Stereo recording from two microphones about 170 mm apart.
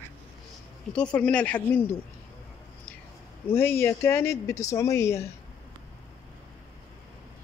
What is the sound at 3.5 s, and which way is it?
Speech, 15° left (ahead or behind).